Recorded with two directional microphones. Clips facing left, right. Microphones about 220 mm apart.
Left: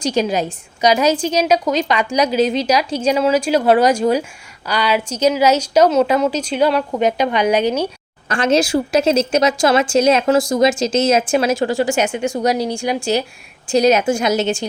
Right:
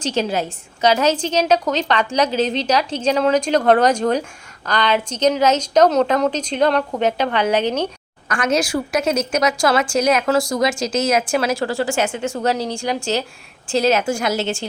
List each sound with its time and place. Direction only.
0.0 s a woman's voice: 15° left (ahead or behind)
8.3 s a woman's voice: 25° left (ahead or behind)